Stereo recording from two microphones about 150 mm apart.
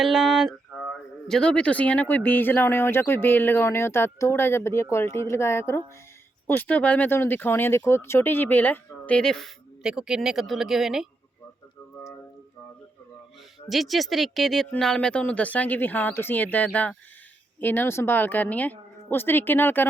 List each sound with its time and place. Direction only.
0.0 s a sound: centre (ahead or behind)
1.3 s speech: 5° left (ahead or behind)
13.7 s speech: centre (ahead or behind)